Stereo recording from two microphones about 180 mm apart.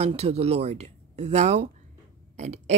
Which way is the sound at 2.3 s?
40° right (ahead or behind).